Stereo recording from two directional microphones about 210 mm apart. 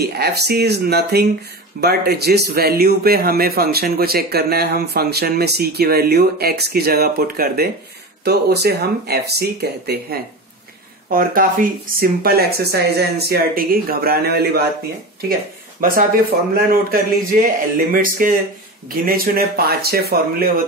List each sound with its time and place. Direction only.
0.0 s speech: 50° right (ahead or behind)
15.8 s speech: 45° right (ahead or behind)